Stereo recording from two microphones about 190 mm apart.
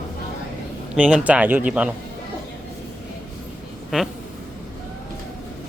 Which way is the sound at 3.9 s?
5° right (ahead or behind).